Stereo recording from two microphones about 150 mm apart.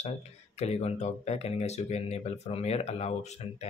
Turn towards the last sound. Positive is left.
turn(degrees=45)  # may be behind; listen again after turning